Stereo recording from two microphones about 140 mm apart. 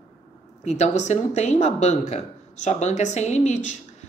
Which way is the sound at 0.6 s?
50° left (ahead or behind).